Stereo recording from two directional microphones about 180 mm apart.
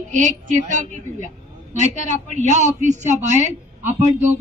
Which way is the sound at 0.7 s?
45° right (ahead or behind).